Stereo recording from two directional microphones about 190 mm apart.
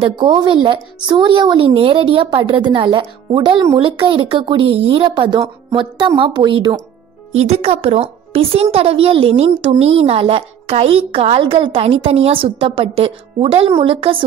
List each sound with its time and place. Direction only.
0.0 s a woman's voice: 25° right (ahead or behind)